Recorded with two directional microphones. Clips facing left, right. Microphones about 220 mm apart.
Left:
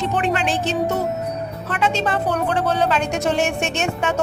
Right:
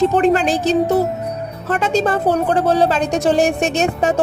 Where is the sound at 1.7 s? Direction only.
45° right (ahead or behind).